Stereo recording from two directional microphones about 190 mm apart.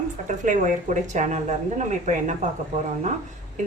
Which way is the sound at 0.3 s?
40° right (ahead or behind).